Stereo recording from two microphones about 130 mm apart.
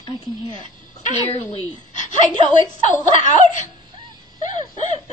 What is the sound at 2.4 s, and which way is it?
Speech, 40° right (ahead or behind).